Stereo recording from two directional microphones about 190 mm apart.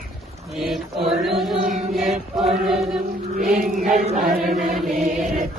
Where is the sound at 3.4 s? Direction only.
50° right (ahead or behind).